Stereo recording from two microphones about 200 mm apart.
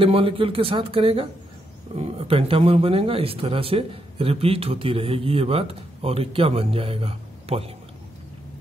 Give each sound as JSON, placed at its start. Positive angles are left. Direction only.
{"t": 0.0, "sound": "speech", "side_deg": -25}